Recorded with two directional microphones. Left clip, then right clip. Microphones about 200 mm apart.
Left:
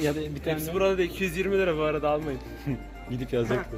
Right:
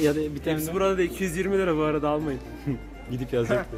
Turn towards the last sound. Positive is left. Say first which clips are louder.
# right 2 dB
turn(degrees=15)  # may be behind; listen again after turning